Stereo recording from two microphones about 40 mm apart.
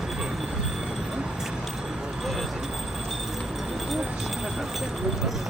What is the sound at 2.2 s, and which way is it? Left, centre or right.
Vehicle, centre.